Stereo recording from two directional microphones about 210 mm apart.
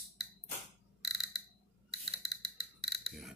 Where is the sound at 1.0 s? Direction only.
Centre (ahead or behind).